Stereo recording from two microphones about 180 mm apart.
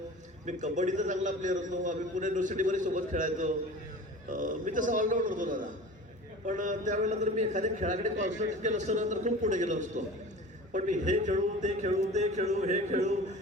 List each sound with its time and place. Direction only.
0.4 s a man's voice: 40° right (ahead or behind)